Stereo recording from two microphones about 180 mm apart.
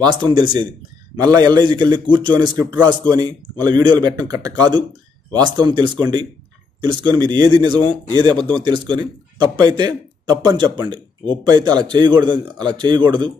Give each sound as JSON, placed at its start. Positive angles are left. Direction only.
{"t": 0.0, "sound": "speech", "side_deg": -25}